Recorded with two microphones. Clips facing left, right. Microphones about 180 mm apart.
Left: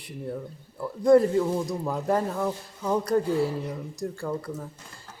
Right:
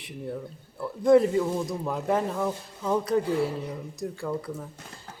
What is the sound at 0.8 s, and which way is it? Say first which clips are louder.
A man's voice: left 1 dB; centre (ahead or behind).